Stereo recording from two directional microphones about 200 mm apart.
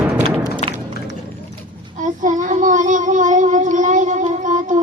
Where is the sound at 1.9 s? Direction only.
40° right (ahead or behind).